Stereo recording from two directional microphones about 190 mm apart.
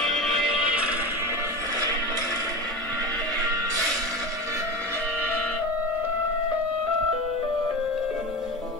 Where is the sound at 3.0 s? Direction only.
20° right (ahead or behind).